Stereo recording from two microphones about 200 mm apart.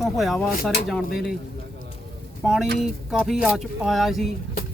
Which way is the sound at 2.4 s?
Centre (ahead or behind).